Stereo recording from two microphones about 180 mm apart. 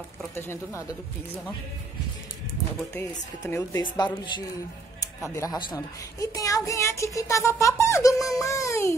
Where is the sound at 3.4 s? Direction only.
15° left (ahead or behind).